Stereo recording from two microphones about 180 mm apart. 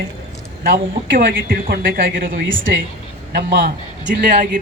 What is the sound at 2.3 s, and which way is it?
Speech, 90° right.